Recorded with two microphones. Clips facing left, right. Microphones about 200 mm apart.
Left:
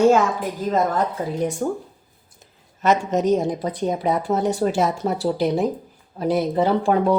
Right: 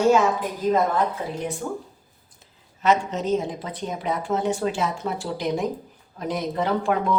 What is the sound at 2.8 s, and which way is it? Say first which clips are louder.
A woman's voice: left 3 dB; 45° left (ahead or behind).